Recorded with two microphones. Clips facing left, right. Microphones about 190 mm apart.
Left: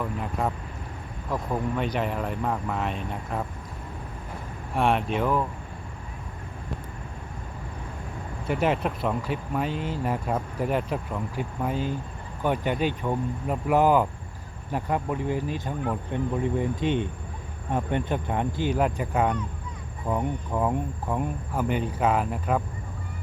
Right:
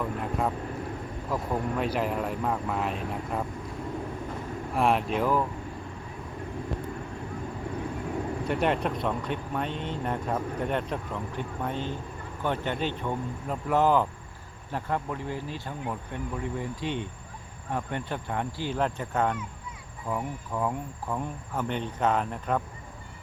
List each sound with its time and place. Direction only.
0.2 s speech: centre (ahead or behind)
4.7 s speech: centre (ahead or behind)
8.4 s speech: centre (ahead or behind)